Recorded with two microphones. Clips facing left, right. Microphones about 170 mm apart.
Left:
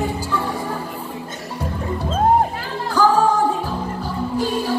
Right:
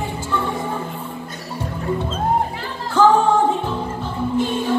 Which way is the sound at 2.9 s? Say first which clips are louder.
Right 2 dB; 25° right (ahead or behind).